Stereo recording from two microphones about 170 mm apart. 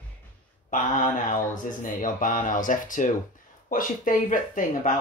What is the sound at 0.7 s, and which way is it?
Speech, 50° left (ahead or behind).